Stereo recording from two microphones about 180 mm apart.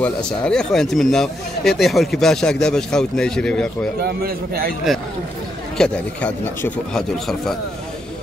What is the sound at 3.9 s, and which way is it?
Speech, 60° right (ahead or behind).